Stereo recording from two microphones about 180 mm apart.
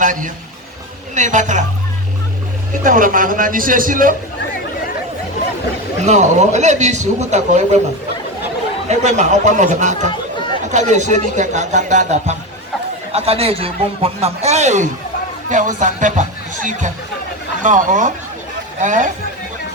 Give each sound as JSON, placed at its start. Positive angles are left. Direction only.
{"t": 0.0, "sound": "a man's voice", "side_deg": -45}
{"t": 2.8, "sound": "a man's voice", "side_deg": -50}
{"t": 6.1, "sound": "a man's voice", "side_deg": -40}
{"t": 8.9, "sound": "a man's voice", "side_deg": -40}
{"t": 17.6, "sound": "a man's voice", "side_deg": -45}